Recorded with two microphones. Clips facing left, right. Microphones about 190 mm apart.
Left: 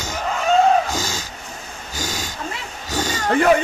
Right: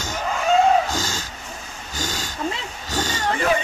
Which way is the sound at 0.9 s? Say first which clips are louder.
Left 1 dB; 10° left (ahead or behind).